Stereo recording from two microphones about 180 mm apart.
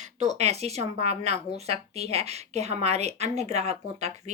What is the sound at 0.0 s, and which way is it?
Speech, 40° right (ahead or behind).